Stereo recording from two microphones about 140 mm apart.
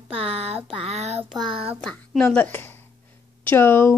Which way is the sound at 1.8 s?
5° left (ahead or behind).